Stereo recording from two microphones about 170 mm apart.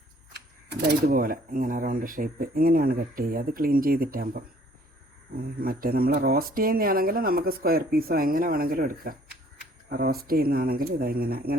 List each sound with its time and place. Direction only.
0.3 s speech: 75° right (ahead or behind)